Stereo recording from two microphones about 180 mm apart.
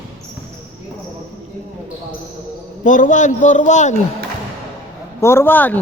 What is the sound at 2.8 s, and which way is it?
A man's voice, 45° left (ahead or behind).